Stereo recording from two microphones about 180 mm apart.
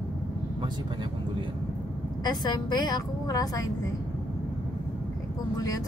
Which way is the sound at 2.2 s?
20° left (ahead or behind).